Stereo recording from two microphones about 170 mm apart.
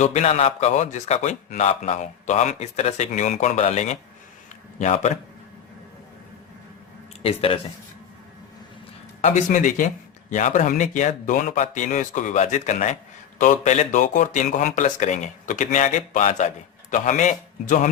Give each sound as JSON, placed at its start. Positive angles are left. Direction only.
{"t": 0.0, "sound": "a man's voice", "side_deg": 45}
{"t": 7.2, "sound": "speech", "side_deg": 35}
{"t": 9.2, "sound": "a man's voice", "side_deg": 45}